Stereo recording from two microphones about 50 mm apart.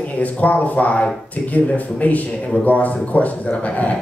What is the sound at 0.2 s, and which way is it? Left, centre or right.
Speech, left.